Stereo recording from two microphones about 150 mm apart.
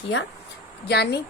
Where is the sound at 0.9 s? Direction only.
90° left.